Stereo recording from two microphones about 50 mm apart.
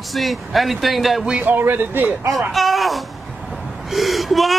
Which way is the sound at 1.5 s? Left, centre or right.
Right.